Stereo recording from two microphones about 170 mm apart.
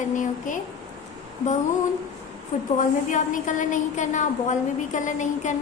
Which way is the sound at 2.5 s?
50° left (ahead or behind).